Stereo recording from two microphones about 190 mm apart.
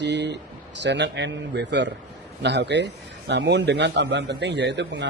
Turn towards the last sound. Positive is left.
turn(degrees=-65)  # may be behind; listen again after turning